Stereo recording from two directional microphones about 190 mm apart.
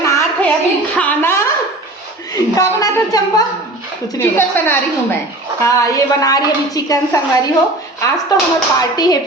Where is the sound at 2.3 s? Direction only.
20° left (ahead or behind).